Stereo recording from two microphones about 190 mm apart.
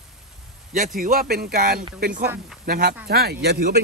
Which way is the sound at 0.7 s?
45° right (ahead or behind).